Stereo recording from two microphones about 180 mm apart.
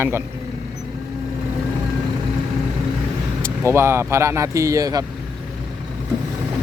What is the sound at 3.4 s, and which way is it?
Speech, 15° right (ahead or behind).